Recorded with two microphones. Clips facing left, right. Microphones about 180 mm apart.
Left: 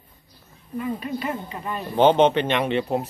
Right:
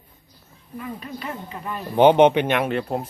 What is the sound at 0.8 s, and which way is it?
Speech, 5° left (ahead or behind).